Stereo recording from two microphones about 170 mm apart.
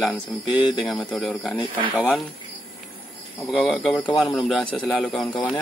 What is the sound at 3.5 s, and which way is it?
Speech, centre (ahead or behind).